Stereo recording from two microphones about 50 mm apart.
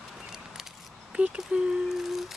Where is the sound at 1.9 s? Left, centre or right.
Centre.